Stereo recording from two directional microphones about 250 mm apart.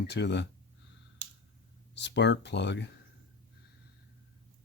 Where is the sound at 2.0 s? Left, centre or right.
Left.